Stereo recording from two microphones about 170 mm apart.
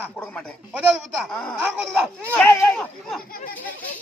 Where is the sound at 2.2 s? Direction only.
10° left (ahead or behind).